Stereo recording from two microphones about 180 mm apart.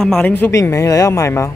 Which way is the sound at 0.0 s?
5° left (ahead or behind).